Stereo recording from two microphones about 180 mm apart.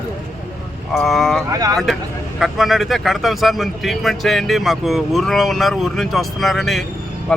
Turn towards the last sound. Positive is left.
turn(degrees=0)  # may be behind; listen again after turning